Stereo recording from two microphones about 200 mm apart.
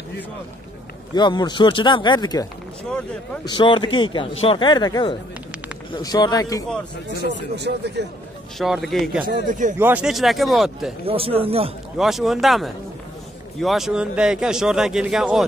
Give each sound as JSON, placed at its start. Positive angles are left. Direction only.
{"t": 1.1, "sound": "speech", "side_deg": 20}
{"t": 3.4, "sound": "speech", "side_deg": 25}
{"t": 7.5, "sound": "speech", "side_deg": -55}
{"t": 8.5, "sound": "speech", "side_deg": 0}
{"t": 9.2, "sound": "speech", "side_deg": -40}
{"t": 9.8, "sound": "speech", "side_deg": -10}
{"t": 11.1, "sound": "speech", "side_deg": -30}
{"t": 12.0, "sound": "speech", "side_deg": 0}